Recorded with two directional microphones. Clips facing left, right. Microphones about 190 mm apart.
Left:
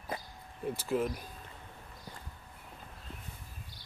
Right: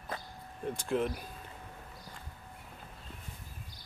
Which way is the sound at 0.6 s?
5° left (ahead or behind).